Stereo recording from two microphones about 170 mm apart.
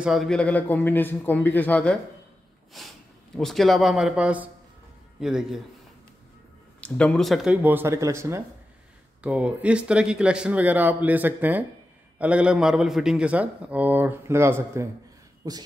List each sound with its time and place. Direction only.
0.0 s a man's voice: centre (ahead or behind)
6.8 s a man's voice: 5° left (ahead or behind); by 15.6 s 20° right (ahead or behind)